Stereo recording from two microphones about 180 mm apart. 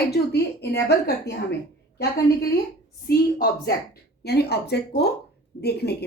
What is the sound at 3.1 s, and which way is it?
A woman's voice, 60° left (ahead or behind).